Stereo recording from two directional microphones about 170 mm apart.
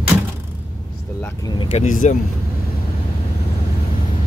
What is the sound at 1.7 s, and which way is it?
Speech, 45° left (ahead or behind).